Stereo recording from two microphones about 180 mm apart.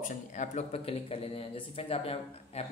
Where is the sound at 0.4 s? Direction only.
35° left (ahead or behind).